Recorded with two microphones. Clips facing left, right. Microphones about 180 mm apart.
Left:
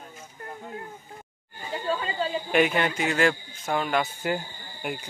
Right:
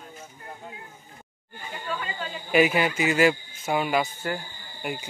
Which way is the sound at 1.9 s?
30° left (ahead or behind).